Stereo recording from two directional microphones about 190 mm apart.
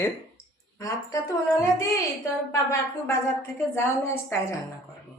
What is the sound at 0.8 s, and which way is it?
Speech, 15° left (ahead or behind).